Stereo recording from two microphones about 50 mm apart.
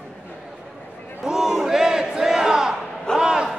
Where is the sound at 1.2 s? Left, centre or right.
Centre.